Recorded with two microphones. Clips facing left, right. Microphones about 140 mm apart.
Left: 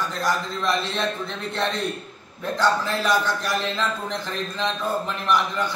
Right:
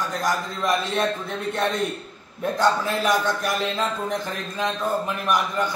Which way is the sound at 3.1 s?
15° right (ahead or behind).